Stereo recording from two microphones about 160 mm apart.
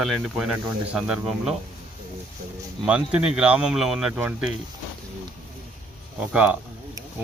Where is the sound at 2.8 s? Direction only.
5° right (ahead or behind).